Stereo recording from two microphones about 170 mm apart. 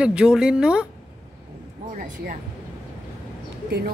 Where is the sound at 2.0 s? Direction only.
55° right (ahead or behind).